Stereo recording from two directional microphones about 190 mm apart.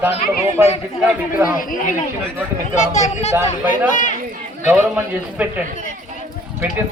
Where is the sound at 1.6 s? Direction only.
45° left (ahead or behind).